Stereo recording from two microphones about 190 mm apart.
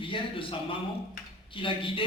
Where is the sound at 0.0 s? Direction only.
25° left (ahead or behind).